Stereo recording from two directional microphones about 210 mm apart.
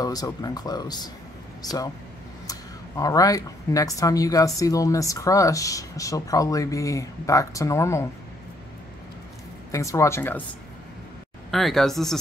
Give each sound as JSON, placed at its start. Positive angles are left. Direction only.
{"t": 0.0, "sound": "speech", "side_deg": 15}
{"t": 3.0, "sound": "speech", "side_deg": 15}
{"t": 9.7, "sound": "speech", "side_deg": 15}
{"t": 11.5, "sound": "speech", "side_deg": 0}